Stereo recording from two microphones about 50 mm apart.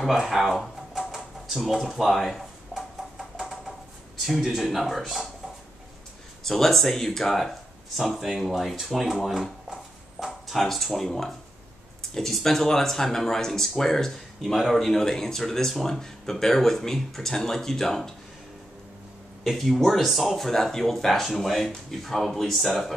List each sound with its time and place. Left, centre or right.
0.0 s speech: centre
0.6 s typewriter: centre
4.2 s speech: centre
6.4 s speech: centre
19.4 s speech: centre